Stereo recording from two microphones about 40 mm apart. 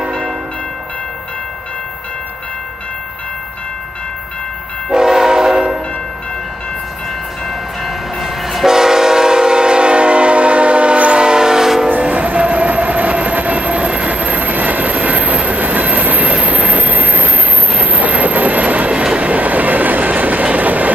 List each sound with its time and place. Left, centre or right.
4.9 s train horn: centre
7.4 s train: centre
12.0 s train: right